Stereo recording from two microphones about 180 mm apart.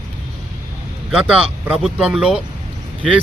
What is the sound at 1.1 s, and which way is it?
A man's voice, 5° right (ahead or behind).